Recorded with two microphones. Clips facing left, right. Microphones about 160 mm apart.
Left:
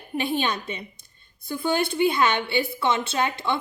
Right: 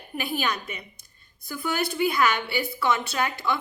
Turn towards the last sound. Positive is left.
turn(degrees=25)  # may be behind; listen again after turning